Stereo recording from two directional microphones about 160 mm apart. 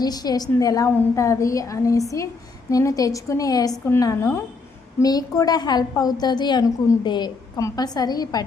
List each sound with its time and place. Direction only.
0.0 s a woman's voice: 25° left (ahead or behind)